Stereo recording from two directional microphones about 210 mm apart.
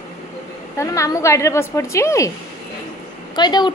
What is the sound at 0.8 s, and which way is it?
A woman's voice, 15° left (ahead or behind).